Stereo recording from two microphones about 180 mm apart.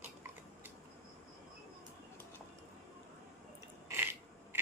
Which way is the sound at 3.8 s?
10° right (ahead or behind).